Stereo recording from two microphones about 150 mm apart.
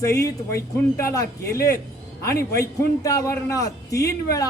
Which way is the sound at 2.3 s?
90° left.